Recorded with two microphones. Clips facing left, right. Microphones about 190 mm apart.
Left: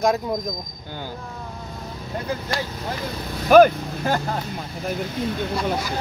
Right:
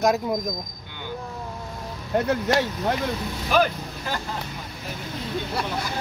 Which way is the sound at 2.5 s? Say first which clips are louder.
Right 7 dB; 75° right (ahead or behind).